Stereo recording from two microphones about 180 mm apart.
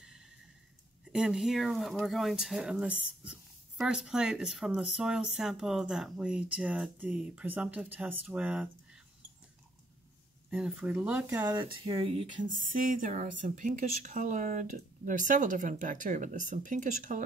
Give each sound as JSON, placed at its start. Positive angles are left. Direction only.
{"t": 0.0, "sound": "a sound", "side_deg": -5}
{"t": 1.1, "sound": "speech", "side_deg": -5}
{"t": 10.5, "sound": "speech", "side_deg": -5}
{"t": 11.4, "sound": "speech", "side_deg": -25}
{"t": 12.9, "sound": "speech", "side_deg": -45}